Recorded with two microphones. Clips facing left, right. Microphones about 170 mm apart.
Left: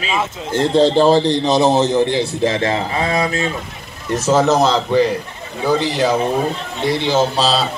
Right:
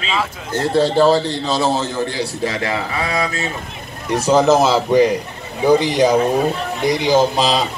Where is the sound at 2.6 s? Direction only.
35° left (ahead or behind).